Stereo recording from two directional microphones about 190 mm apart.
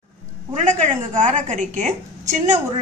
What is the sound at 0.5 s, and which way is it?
A woman's voice, 40° right (ahead or behind).